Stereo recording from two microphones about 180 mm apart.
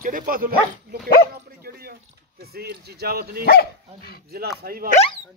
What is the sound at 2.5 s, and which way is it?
Speech, 60° right (ahead or behind).